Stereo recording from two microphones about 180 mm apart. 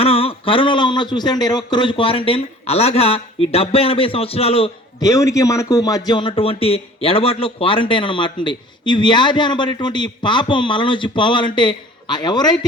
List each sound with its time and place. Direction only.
0.0 s a man's voice: 30° left (ahead or behind)
5.0 s a man's voice: 20° left (ahead or behind)